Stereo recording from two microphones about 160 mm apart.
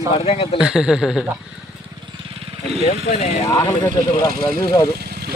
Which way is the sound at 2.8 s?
40° left (ahead or behind).